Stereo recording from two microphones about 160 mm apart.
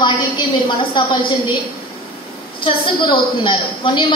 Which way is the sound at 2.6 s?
30° left (ahead or behind).